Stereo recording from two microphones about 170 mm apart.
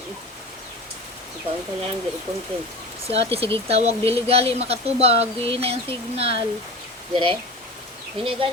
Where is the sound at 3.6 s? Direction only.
35° right (ahead or behind).